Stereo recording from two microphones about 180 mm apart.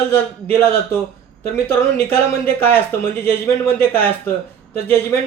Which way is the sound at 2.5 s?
10° left (ahead or behind).